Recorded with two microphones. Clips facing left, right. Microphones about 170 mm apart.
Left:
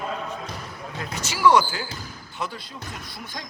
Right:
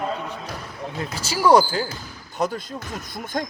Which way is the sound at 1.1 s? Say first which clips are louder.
Right 2 dB; 35° right (ahead or behind).